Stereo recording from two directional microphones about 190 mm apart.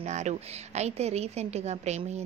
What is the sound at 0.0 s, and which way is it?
A woman's voice, 35° right (ahead or behind).